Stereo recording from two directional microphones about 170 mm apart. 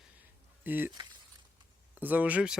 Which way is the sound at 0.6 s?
10° right (ahead or behind).